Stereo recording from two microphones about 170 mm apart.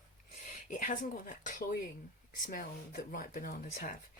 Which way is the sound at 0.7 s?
50° left (ahead or behind).